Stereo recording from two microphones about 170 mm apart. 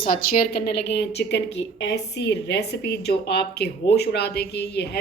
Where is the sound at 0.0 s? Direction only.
55° left (ahead or behind).